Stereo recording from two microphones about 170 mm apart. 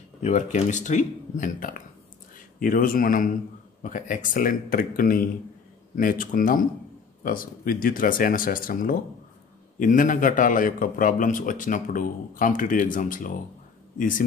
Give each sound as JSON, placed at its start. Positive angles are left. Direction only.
{"t": 0.2, "sound": "a man's voice", "side_deg": 45}